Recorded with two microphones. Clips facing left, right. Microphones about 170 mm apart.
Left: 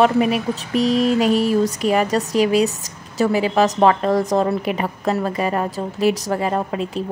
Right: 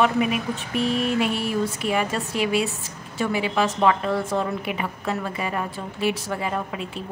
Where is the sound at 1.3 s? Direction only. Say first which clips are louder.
Left 9 dB; 90° left.